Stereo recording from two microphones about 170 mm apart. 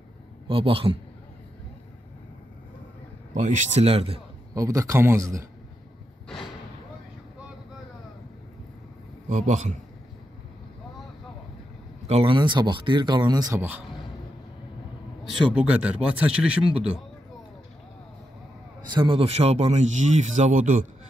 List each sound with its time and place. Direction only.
0.5 s speech: 30° right (ahead or behind)
3.3 s speech: 45° right (ahead or behind)
4.6 s speech: 20° right (ahead or behind)
9.3 s speech: 45° right (ahead or behind)
12.1 s speech: 35° right (ahead or behind)
13.6 s speech: 10° right (ahead or behind)
15.5 s speech: 5° right (ahead or behind)
18.9 s speech: 30° right (ahead or behind); by 20.8 s 50° right (ahead or behind)